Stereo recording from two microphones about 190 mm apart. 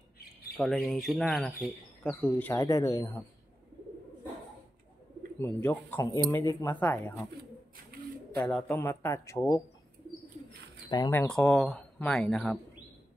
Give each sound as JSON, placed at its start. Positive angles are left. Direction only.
{"t": 0.6, "sound": "speech", "side_deg": 5}
{"t": 5.4, "sound": "speech", "side_deg": 10}
{"t": 7.7, "sound": "bird", "side_deg": -55}
{"t": 8.4, "sound": "speech", "side_deg": 5}
{"t": 11.1, "sound": "speech", "side_deg": 5}